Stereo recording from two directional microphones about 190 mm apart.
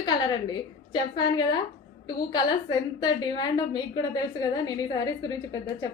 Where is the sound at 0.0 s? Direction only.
20° left (ahead or behind).